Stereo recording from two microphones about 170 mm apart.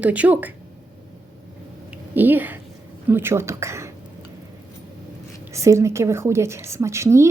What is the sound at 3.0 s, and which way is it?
Speech, 15° right (ahead or behind).